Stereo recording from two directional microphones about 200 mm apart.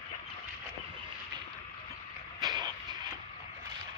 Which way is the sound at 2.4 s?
20° right (ahead or behind).